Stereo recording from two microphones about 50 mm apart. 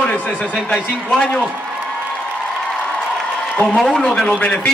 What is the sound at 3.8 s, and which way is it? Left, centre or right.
Speech, centre.